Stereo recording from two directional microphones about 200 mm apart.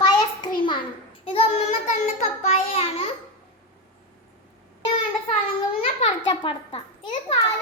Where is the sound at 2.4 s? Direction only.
30° left (ahead or behind).